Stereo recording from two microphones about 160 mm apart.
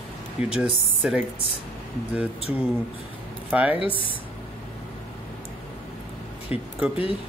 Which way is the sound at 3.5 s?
10° right (ahead or behind).